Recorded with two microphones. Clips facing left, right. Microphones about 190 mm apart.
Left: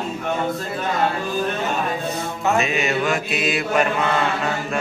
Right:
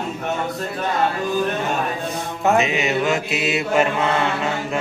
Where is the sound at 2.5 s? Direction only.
20° right (ahead or behind).